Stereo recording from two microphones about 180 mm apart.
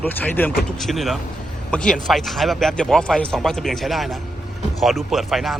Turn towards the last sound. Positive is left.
turn(degrees=0)  # may be behind; listen again after turning